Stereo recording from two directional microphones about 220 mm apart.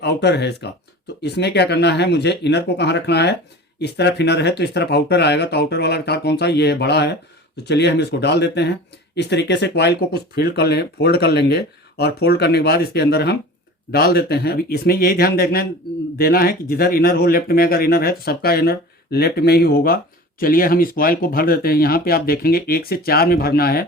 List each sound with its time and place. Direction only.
0.0 s speech: 50° left (ahead or behind)